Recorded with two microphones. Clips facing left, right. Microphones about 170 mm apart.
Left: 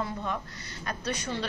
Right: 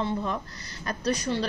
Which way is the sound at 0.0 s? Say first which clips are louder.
Right 4 dB; 35° right (ahead or behind).